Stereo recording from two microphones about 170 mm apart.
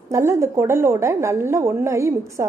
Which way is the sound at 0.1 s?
15° right (ahead or behind).